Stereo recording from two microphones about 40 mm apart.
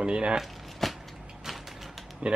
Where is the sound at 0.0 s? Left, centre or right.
Right.